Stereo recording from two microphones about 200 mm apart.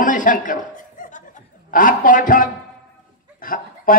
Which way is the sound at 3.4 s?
45° left (ahead or behind).